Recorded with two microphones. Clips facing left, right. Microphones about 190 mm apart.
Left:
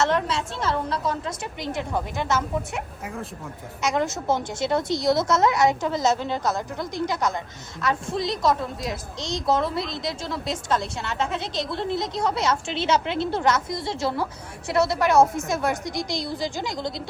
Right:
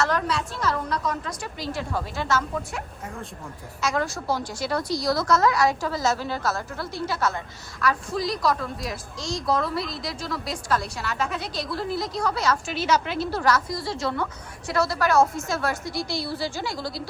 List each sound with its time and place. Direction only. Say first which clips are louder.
0.0 s a woman's voice: left 2 dB; 25° left (ahead or behind)